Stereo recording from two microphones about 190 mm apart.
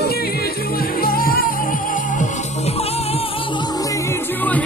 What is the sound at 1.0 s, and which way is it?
Music, 50° left (ahead or behind).